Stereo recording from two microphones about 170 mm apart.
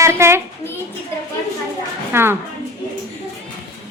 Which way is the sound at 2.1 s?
15° right (ahead or behind).